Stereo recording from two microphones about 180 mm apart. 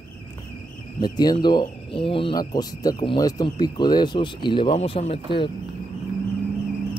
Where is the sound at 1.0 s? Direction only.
25° left (ahead or behind).